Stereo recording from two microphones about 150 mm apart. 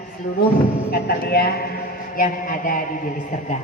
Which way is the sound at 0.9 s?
90° left.